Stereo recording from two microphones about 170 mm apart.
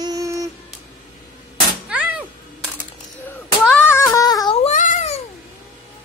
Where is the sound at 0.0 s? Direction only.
20° right (ahead or behind).